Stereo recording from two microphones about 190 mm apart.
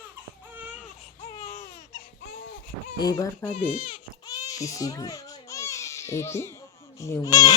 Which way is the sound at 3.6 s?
45° left (ahead or behind).